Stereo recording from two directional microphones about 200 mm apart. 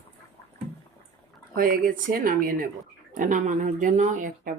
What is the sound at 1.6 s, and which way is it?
Speech, 45° right (ahead or behind).